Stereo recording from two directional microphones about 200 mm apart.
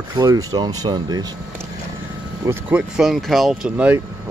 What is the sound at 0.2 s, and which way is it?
Speech, 20° right (ahead or behind).